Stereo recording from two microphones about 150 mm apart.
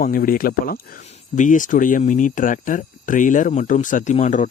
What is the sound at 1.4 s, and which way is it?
Speech, 60° left (ahead or behind).